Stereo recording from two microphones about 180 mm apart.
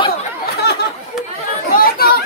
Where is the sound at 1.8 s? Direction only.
55° left (ahead or behind).